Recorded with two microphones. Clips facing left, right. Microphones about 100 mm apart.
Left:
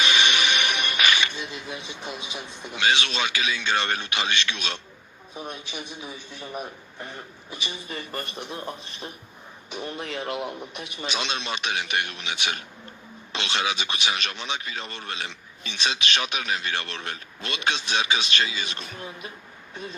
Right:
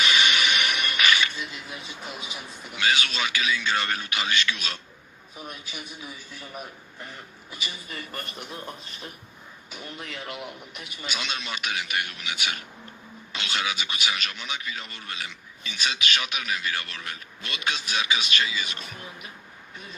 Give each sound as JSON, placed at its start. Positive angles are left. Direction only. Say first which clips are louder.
{"t": 0.0, "sound": "music", "louder": "left 1 dB", "side_deg": 20}
{"t": 5.3, "sound": "speech", "louder": "left 4 dB", "side_deg": 25}